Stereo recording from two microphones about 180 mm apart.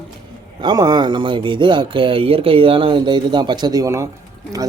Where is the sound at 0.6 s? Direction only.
25° right (ahead or behind).